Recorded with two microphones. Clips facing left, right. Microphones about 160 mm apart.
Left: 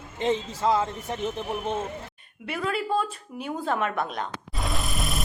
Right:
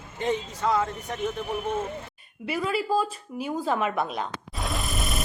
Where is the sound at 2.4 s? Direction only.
5° right (ahead or behind).